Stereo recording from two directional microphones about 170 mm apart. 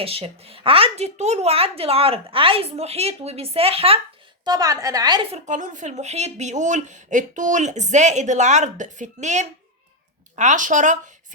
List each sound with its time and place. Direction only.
0.0 s speech: 35° right (ahead or behind)
4.4 s a woman's voice: 20° right (ahead or behind)
5.5 s speech: 50° right (ahead or behind)